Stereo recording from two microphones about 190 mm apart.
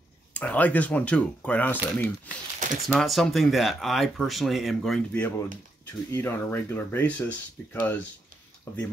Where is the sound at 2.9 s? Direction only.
Centre (ahead or behind).